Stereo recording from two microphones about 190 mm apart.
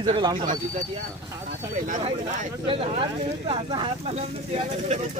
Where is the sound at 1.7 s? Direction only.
45° right (ahead or behind).